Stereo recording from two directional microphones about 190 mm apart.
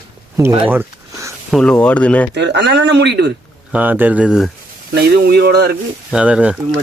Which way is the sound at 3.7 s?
10° right (ahead or behind).